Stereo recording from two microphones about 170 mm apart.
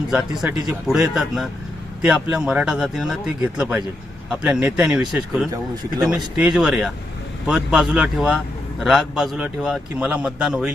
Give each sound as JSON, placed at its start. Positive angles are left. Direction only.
{"t": 0.1, "sound": "a man's voice", "side_deg": -5}
{"t": 5.5, "sound": "speech", "side_deg": -20}
{"t": 6.1, "sound": "a man's voice", "side_deg": -5}